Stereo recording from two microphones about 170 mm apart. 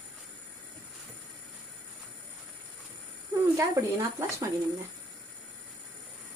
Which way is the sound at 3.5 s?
20° right (ahead or behind).